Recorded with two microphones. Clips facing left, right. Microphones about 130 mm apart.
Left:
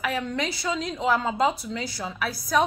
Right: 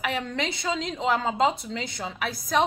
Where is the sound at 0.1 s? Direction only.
25° right (ahead or behind).